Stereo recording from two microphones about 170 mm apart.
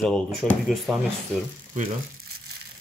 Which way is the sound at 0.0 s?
Centre (ahead or behind).